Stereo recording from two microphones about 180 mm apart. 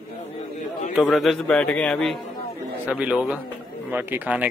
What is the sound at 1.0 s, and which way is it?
Speech, centre (ahead or behind).